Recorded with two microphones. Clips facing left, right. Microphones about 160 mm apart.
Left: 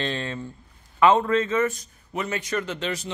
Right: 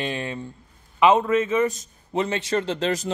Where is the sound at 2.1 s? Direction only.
25° right (ahead or behind).